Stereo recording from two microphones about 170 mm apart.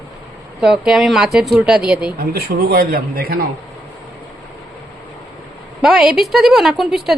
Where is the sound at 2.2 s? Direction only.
65° right (ahead or behind).